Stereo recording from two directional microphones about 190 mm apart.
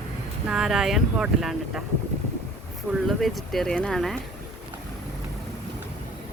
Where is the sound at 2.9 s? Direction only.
5° right (ahead or behind).